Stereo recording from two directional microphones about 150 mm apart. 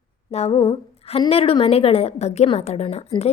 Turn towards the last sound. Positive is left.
turn(degrees=45)  # may be behind; listen again after turning